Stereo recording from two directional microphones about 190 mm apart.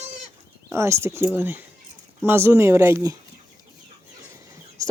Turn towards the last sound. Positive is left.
turn(degrees=-15)  # may be behind; listen again after turning